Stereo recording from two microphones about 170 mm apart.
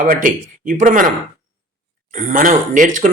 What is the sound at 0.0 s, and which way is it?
Speech, 50° right (ahead or behind).